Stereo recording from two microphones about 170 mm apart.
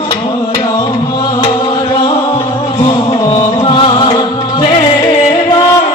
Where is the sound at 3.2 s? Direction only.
30° left (ahead or behind).